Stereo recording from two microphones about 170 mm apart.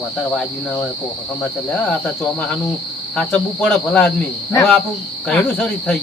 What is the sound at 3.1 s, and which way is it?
Speech, 5° left (ahead or behind).